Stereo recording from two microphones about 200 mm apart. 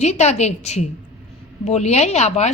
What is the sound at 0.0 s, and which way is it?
Speech, 35° left (ahead or behind).